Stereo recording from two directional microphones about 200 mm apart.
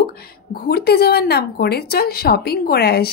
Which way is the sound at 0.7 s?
55° left (ahead or behind).